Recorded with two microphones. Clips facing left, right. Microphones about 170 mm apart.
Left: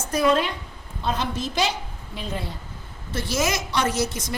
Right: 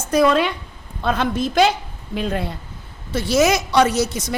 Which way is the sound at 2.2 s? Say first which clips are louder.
Right 8 dB; 70° right (ahead or behind).